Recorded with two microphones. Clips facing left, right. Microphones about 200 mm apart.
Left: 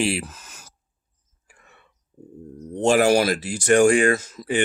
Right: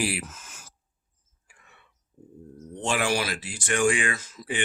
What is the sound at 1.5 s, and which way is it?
Throat clearing, 45° left (ahead or behind).